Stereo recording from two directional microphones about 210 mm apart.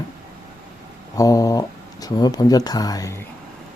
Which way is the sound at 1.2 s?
15° left (ahead or behind).